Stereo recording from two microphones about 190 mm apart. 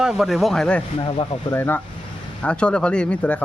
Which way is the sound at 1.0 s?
30° left (ahead or behind).